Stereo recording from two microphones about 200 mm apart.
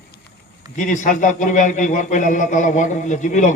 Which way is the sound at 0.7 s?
40° left (ahead or behind).